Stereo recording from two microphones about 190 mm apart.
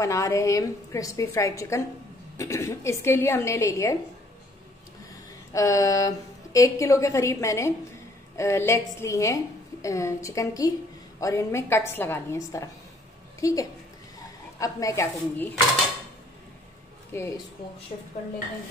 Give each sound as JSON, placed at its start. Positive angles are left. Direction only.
{"t": 0.0, "sound": "a woman's voice", "side_deg": 15}
{"t": 5.5, "sound": "a woman's voice", "side_deg": 15}
{"t": 17.1, "sound": "a woman's voice", "side_deg": 10}
{"t": 17.9, "sound": "speech", "side_deg": 40}